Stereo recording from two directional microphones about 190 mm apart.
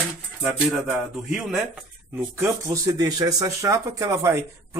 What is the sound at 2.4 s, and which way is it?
Speech, 15° right (ahead or behind).